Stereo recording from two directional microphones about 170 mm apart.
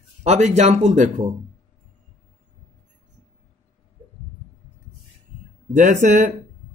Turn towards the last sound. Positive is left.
turn(degrees=-45)  # may be behind; listen again after turning